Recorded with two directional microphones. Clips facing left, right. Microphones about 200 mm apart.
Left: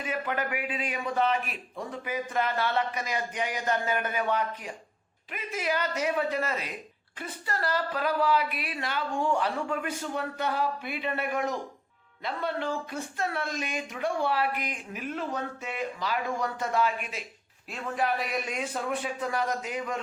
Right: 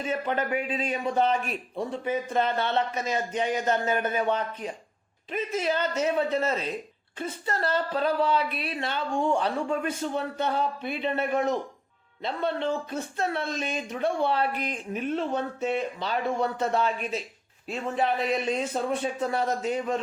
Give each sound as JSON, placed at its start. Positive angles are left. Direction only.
{"t": 0.0, "sound": "a man's voice", "side_deg": -25}
{"t": 18.3, "sound": "a man's voice", "side_deg": -25}